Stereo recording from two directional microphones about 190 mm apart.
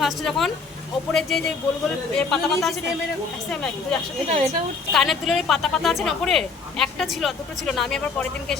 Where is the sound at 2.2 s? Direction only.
Centre (ahead or behind).